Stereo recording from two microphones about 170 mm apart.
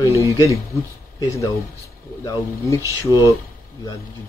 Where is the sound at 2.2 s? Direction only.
20° left (ahead or behind).